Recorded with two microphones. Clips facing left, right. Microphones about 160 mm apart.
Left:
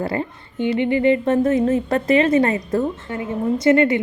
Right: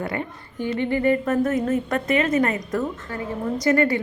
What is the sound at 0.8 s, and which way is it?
A woman's voice, 20° left (ahead or behind).